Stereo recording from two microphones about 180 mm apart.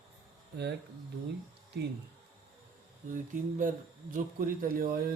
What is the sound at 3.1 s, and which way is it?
Speech, 45° right (ahead or behind).